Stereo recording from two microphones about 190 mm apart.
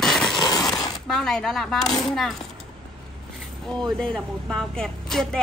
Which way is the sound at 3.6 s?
5° left (ahead or behind).